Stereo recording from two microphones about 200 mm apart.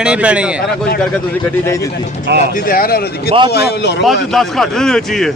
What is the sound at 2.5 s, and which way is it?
Speech, 45° left (ahead or behind).